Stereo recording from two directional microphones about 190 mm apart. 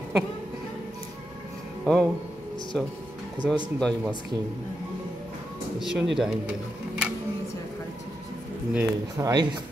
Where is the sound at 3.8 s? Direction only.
5° left (ahead or behind).